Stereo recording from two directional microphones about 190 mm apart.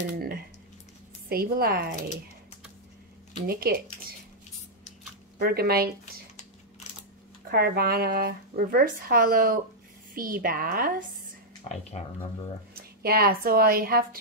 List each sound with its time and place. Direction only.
0.1 s a sound: 50° right (ahead or behind)
1.3 s speech: 50° right (ahead or behind)
3.4 s speech: 55° right (ahead or behind)
5.4 s speech: 55° right (ahead or behind)
7.5 s speech: 55° right (ahead or behind)
11.7 s speech: 30° left (ahead or behind)
13.0 s speech: 50° right (ahead or behind)